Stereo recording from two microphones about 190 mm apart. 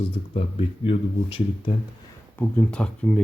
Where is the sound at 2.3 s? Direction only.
10° left (ahead or behind).